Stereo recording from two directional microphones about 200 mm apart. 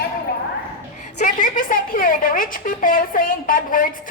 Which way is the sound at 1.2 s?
40° left (ahead or behind).